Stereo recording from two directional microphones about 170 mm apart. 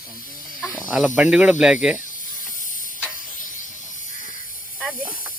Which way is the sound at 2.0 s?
50° left (ahead or behind).